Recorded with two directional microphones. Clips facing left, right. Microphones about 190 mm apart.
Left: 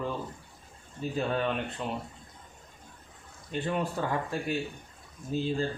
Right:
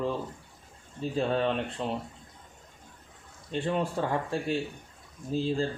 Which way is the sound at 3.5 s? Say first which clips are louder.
Right 2 dB; 30° right (ahead or behind).